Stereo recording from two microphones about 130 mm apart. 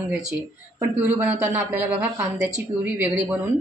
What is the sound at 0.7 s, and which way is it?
A man's voice, 15° right (ahead or behind).